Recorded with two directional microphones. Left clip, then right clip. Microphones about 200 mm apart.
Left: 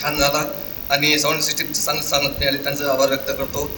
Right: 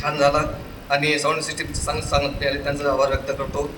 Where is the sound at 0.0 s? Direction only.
40° left (ahead or behind).